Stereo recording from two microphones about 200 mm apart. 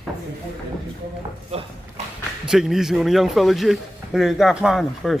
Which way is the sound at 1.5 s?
30° right (ahead or behind).